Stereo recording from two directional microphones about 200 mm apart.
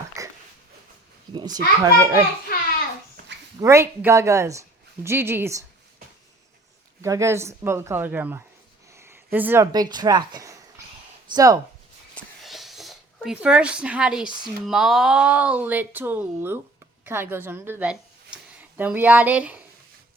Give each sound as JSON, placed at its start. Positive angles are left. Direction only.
{"t": 0.2, "sound": "a sound", "side_deg": -15}
{"t": 1.3, "sound": "speech", "side_deg": -20}
{"t": 2.5, "sound": "a sound", "side_deg": 50}
{"t": 3.6, "sound": "speech", "side_deg": -15}
{"t": 7.0, "sound": "speech", "side_deg": -15}
{"t": 12.1, "sound": "a woman's voice", "side_deg": 0}